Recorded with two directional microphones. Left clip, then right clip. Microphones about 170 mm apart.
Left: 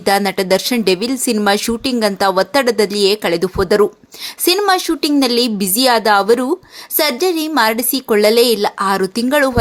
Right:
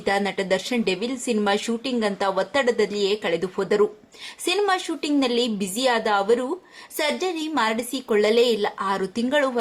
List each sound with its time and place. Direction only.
0.0 s a woman's voice: 35° left (ahead or behind)